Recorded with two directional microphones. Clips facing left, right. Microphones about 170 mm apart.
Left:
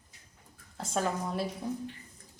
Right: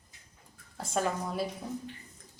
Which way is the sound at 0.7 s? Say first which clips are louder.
Even; centre (ahead or behind).